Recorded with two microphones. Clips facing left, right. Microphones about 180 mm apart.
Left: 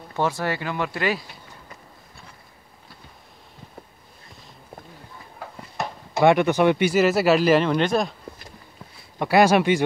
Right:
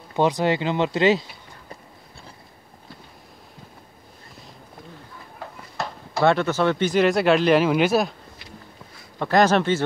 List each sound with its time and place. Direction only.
0.1 s speech: 15° right (ahead or behind)
5.8 s speech: 15° left (ahead or behind); by 8.1 s 5° right (ahead or behind)
9.2 s speech: 10° left (ahead or behind)